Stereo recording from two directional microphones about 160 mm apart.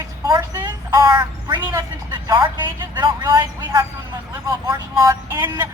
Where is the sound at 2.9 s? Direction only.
25° right (ahead or behind).